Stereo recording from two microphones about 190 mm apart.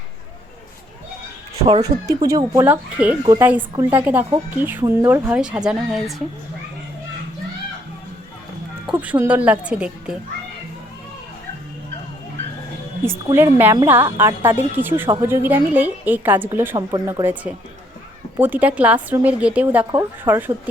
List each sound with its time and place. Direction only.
1.6 s speech: 30° right (ahead or behind)
2.2 s speech: 15° right (ahead or behind)
8.9 s speech: 5° right (ahead or behind)
13.3 s speech: 10° right (ahead or behind)
19.8 s speech: 20° right (ahead or behind)